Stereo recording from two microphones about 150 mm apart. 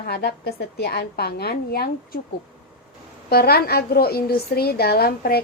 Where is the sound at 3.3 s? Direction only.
90° left.